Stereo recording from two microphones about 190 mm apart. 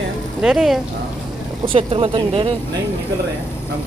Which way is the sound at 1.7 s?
30° right (ahead or behind).